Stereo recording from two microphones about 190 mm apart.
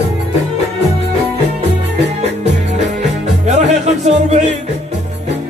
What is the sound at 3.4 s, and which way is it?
Music, 35° right (ahead or behind).